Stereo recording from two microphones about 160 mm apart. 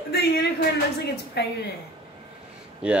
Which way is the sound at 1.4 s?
90° left.